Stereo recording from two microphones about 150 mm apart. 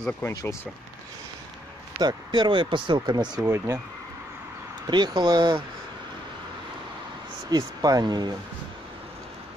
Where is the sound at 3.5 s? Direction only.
20° right (ahead or behind).